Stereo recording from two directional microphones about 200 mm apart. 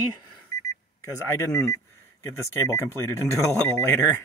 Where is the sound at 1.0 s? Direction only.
15° left (ahead or behind).